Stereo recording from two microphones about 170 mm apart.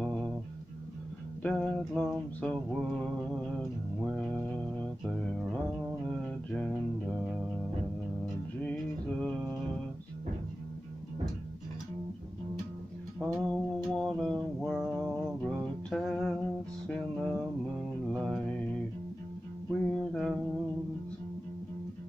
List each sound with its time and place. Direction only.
0.0 s music: centre (ahead or behind)
1.4 s mantra: 5° left (ahead or behind)
8.5 s a sound: 5° left (ahead or behind)
13.2 s mantra: centre (ahead or behind)
18.1 s mantra: 5° right (ahead or behind)
19.7 s music: 5° left (ahead or behind)